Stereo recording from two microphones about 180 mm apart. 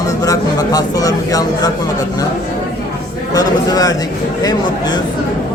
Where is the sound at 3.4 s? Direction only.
20° left (ahead or behind).